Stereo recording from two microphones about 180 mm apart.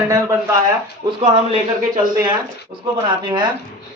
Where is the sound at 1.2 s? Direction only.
30° right (ahead or behind).